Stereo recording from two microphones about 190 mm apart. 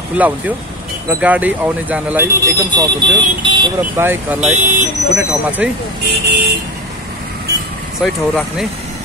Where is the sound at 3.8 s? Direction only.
10° right (ahead or behind).